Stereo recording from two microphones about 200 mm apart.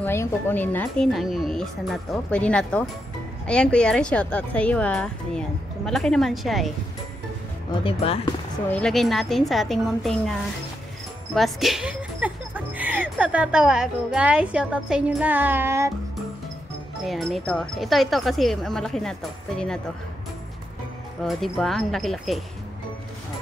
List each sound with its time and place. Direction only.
0.0 s speech: 10° left (ahead or behind)
7.8 s speech: 30° left (ahead or behind)
8.6 s speech: 5° left (ahead or behind)
11.3 s speech: centre (ahead or behind)
17.0 s speech: centre (ahead or behind)
21.2 s speech: centre (ahead or behind)